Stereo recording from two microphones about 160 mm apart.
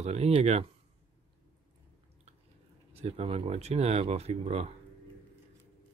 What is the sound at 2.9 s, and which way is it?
Speech, 40° right (ahead or behind).